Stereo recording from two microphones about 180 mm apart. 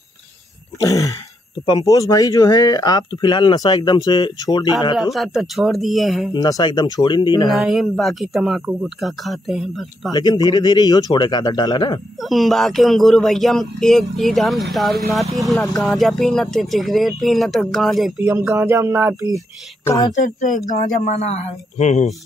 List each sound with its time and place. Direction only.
0.7 s speech: 20° left (ahead or behind)
5.1 s speech: centre (ahead or behind)
6.3 s speech: 20° left (ahead or behind)
7.4 s speech: centre (ahead or behind)
10.1 s speech: 20° left (ahead or behind)
12.2 s speech: centre (ahead or behind)
18.5 s music: 15° right (ahead or behind)
20.1 s speech: 45° left (ahead or behind)